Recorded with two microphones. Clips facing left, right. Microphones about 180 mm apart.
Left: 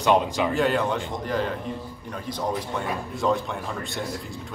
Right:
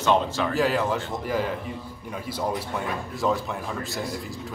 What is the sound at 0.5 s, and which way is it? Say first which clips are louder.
Speech: right 1 dB; centre (ahead or behind).